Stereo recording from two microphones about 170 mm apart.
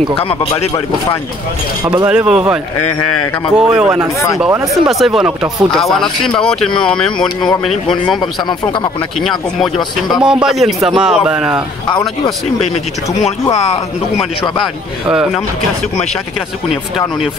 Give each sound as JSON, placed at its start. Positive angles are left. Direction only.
{"t": 0.2, "sound": "speech", "side_deg": 35}
{"t": 2.0, "sound": "speech", "side_deg": -5}
{"t": 7.7, "sound": "a man's voice", "side_deg": 25}
{"t": 10.1, "sound": "speech", "side_deg": -5}
{"t": 12.7, "sound": "speech", "side_deg": 40}
{"t": 15.0, "sound": "speech", "side_deg": -5}